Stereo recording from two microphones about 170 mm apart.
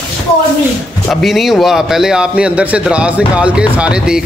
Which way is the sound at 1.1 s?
Centre (ahead or behind).